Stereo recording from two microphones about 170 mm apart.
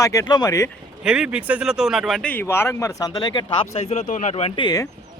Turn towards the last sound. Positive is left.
turn(degrees=25)  # may be behind; listen again after turning